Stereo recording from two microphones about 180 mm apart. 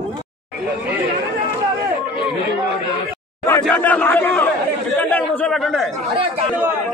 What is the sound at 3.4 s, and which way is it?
Speech, 10° left (ahead or behind).